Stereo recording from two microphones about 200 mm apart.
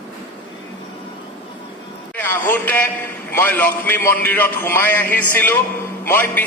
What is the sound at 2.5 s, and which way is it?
A man's voice, 10° left (ahead or behind).